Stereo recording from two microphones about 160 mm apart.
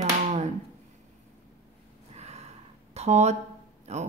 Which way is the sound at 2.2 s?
45° right (ahead or behind).